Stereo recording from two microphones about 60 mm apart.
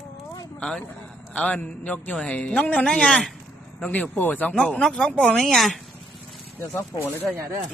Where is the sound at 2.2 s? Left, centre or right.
Centre.